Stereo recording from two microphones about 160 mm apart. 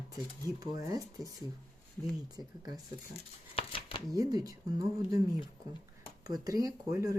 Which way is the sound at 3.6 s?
35° left (ahead or behind).